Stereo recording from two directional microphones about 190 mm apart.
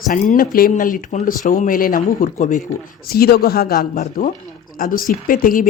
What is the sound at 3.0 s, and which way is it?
Speech, 55° left (ahead or behind).